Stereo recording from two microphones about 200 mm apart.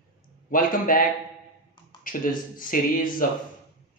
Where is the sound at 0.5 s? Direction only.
45° left (ahead or behind).